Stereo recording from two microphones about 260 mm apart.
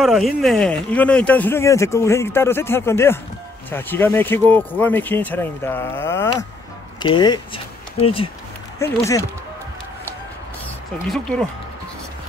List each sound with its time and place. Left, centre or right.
0.0 s speech: centre
11.1 s speech: centre